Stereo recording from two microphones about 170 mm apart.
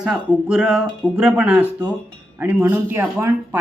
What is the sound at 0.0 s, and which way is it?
A woman's voice, 5° right (ahead or behind).